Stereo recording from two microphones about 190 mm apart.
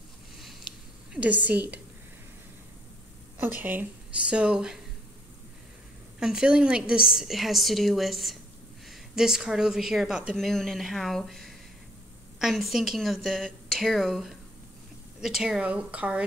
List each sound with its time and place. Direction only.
1.1 s a woman's voice: 10° right (ahead or behind)
3.3 s a woman's voice: 10° right (ahead or behind)
6.1 s speech: 5° right (ahead or behind)